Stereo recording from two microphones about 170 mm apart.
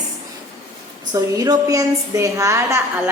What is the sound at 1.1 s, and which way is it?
A woman's voice, 20° right (ahead or behind).